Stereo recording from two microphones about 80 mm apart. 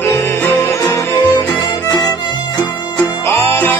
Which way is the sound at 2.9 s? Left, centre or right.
Left.